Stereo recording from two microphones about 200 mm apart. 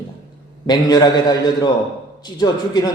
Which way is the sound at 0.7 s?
20° left (ahead or behind).